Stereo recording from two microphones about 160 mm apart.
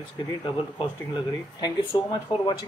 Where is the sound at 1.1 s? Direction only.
30° left (ahead or behind).